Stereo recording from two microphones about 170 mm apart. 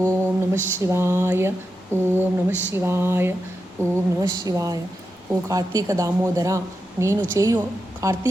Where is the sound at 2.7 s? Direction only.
15° right (ahead or behind).